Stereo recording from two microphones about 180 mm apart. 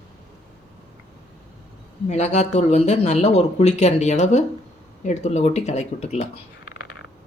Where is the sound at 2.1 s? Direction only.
40° left (ahead or behind).